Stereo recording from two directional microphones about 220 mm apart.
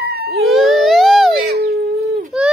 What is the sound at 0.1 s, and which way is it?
Dog, 45° right (ahead or behind).